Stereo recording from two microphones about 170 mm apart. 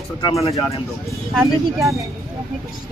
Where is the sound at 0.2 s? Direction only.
35° left (ahead or behind).